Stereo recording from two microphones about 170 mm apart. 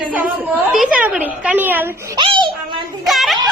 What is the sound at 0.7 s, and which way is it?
A woman's voice, 5° right (ahead or behind).